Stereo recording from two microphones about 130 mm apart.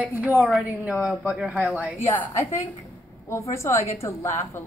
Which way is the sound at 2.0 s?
15° left (ahead or behind).